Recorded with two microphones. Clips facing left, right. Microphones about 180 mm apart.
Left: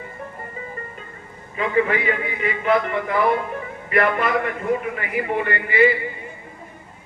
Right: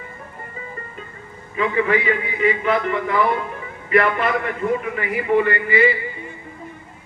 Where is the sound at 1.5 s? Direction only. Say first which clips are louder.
Right 1 dB; 50° left (ahead or behind).